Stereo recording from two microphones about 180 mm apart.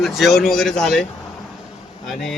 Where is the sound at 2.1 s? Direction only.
Centre (ahead or behind).